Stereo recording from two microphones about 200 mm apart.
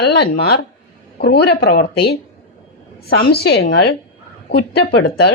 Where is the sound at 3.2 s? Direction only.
55° left (ahead or behind).